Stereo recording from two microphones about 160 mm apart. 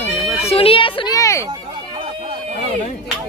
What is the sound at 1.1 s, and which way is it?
Speech, 20° left (ahead or behind).